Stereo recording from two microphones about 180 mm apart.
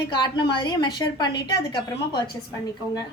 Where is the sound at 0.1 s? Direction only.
25° left (ahead or behind).